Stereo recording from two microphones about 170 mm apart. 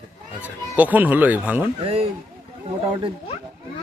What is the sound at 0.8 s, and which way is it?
Speech, 10° right (ahead or behind).